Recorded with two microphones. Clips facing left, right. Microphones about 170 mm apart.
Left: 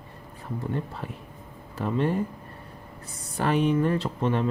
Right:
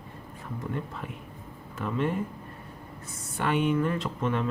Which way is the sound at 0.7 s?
35° left (ahead or behind).